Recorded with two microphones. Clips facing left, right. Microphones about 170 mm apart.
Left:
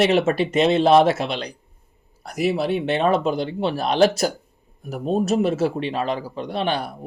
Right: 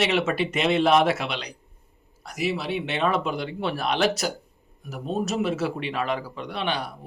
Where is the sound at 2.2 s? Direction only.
55° left (ahead or behind).